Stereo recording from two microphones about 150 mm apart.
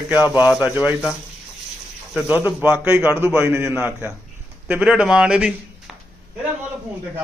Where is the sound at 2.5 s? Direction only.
15° right (ahead or behind).